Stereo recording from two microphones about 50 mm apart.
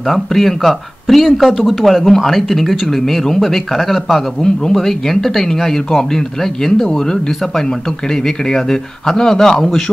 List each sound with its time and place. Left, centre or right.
0.0 s speech: centre